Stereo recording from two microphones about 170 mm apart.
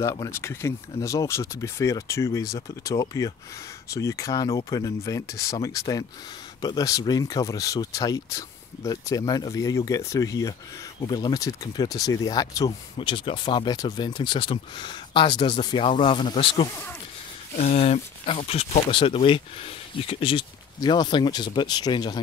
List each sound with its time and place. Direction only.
0.0 s speech: 20° left (ahead or behind)